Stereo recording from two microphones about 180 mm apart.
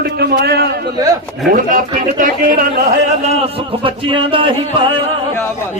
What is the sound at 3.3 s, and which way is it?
A man's voice, 35° right (ahead or behind).